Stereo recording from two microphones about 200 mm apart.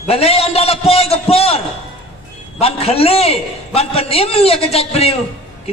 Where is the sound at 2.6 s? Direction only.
30° left (ahead or behind).